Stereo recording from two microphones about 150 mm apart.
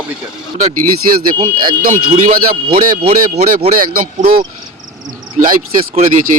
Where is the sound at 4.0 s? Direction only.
65° right (ahead or behind).